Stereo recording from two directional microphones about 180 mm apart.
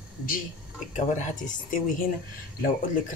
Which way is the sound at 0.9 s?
40° left (ahead or behind).